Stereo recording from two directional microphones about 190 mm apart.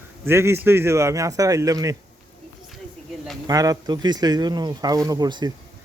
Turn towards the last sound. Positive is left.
turn(degrees=-20)  # may be behind; listen again after turning